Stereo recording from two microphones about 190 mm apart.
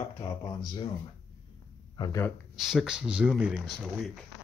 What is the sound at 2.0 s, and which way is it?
Speech, 20° left (ahead or behind).